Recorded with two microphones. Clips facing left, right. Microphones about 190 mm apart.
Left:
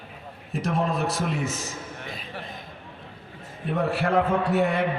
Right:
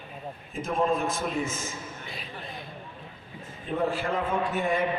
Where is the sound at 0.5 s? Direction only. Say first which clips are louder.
Left 1 dB; 75° left (ahead or behind).